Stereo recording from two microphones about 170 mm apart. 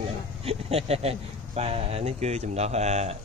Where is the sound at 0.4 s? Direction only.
35° right (ahead or behind).